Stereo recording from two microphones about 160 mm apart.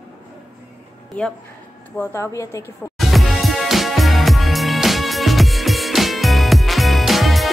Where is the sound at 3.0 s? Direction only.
Centre (ahead or behind).